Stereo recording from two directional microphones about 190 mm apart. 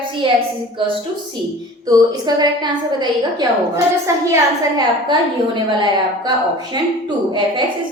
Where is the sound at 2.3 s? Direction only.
20° right (ahead or behind).